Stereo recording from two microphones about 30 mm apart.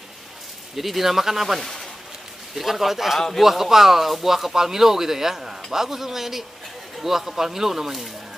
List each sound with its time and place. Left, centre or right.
0.7 s speech: centre
1.6 s speech: centre
2.5 s speech: centre